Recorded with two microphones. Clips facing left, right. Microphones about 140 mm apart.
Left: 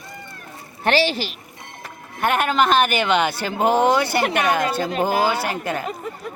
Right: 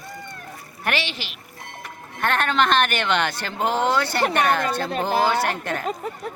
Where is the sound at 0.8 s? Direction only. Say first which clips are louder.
Left 8 dB; 35° left (ahead or behind).